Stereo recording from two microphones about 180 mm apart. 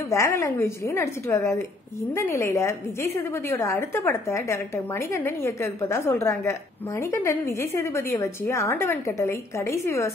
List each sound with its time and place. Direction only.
0.1 s a woman's voice: 15° left (ahead or behind)